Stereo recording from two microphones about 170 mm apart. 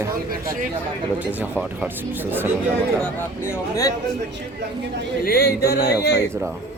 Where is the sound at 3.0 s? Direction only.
15° left (ahead or behind).